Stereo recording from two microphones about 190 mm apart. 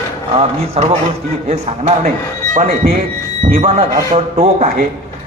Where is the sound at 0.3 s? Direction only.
30° right (ahead or behind).